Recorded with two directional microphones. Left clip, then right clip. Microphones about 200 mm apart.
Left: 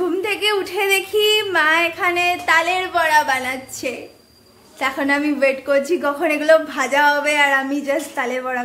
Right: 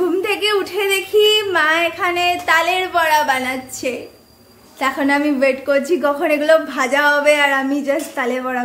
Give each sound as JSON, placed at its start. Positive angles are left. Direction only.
{"t": 0.0, "sound": "a woman's voice", "side_deg": -5}